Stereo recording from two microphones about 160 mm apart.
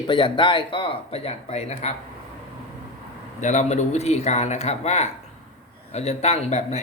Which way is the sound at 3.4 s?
50° left (ahead or behind).